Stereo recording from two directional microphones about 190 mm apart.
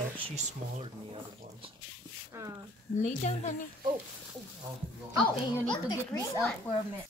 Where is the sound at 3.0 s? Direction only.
40° left (ahead or behind).